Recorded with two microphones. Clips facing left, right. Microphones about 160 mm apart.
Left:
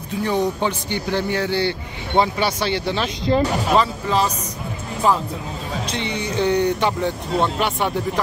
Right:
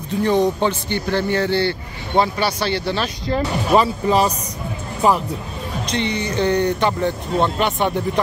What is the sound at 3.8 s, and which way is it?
Speech, 10° right (ahead or behind).